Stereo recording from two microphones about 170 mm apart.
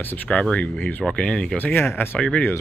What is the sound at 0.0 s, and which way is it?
Speech, 10° left (ahead or behind).